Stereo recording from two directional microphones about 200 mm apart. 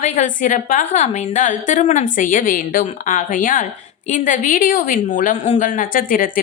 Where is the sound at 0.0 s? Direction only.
40° left (ahead or behind).